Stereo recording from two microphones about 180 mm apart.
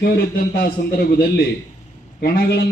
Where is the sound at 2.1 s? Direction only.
60° left (ahead or behind).